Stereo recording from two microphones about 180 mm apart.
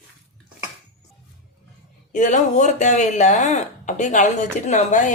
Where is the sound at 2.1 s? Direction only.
45° left (ahead or behind).